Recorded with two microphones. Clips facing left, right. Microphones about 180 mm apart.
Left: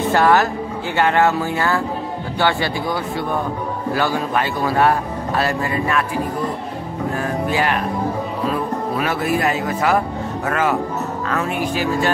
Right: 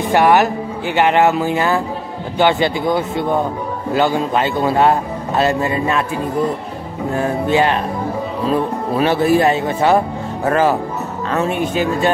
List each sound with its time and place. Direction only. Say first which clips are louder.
0.0 s a man's voice: right 2 dB; 15° right (ahead or behind)